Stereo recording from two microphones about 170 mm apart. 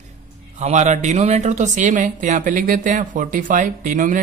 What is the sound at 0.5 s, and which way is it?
Speech, 45° right (ahead or behind).